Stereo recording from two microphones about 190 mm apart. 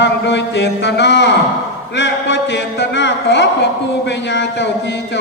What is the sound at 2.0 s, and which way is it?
Speech, 65° left (ahead or behind).